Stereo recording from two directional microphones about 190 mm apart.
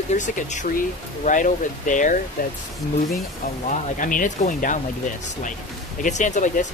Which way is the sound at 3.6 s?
45° left (ahead or behind).